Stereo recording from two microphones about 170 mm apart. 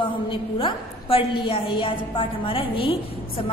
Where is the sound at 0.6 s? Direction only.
30° left (ahead or behind).